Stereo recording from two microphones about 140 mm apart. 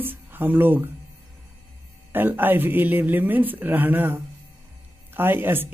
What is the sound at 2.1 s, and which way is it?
Speech, 15° right (ahead or behind).